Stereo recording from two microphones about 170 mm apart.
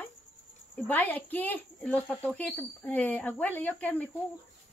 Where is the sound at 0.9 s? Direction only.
10° left (ahead or behind).